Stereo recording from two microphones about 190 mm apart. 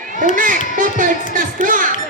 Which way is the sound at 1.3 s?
45° right (ahead or behind).